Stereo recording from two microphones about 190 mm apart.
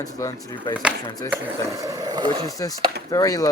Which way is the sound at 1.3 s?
15° right (ahead or behind).